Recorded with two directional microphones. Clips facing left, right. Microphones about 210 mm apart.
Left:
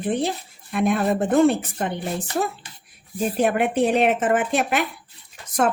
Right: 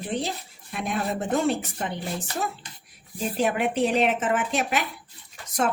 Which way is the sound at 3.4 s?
55° left (ahead or behind).